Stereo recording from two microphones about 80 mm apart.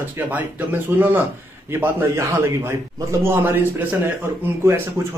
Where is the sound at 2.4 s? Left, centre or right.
Right.